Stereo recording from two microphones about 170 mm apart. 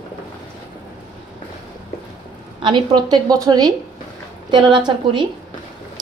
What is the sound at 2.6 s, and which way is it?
A woman's voice, 30° right (ahead or behind).